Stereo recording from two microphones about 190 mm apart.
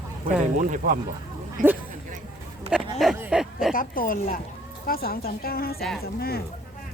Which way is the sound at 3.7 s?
45° left (ahead or behind).